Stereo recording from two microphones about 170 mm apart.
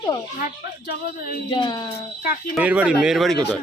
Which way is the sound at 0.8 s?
55° left (ahead or behind).